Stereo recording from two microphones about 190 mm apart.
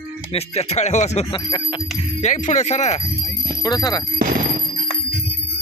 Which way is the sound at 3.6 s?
20° left (ahead or behind).